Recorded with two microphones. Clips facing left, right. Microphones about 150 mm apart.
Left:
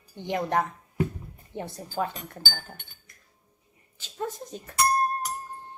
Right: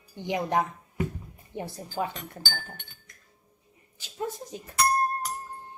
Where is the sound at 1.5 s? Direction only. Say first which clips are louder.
Even; 15° left (ahead or behind).